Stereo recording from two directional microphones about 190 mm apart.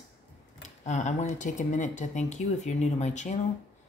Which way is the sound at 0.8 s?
40° left (ahead or behind).